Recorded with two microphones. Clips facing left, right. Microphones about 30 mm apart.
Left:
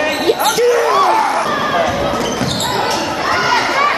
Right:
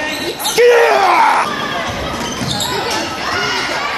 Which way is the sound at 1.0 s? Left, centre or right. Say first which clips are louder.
Right 3 dB; right.